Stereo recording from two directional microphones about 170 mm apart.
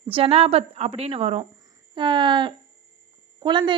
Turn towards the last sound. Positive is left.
turn(degrees=-30)  # may be behind; listen again after turning